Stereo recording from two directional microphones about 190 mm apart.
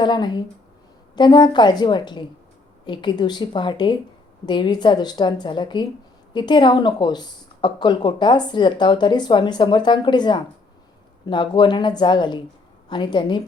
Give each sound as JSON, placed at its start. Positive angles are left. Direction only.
{"t": 0.0, "sound": "a woman's voice", "side_deg": 25}